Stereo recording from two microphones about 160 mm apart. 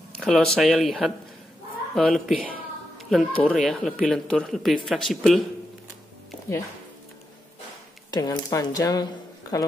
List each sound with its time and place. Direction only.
0.1 s speech: 5° left (ahead or behind)
8.1 s speech: 25° left (ahead or behind)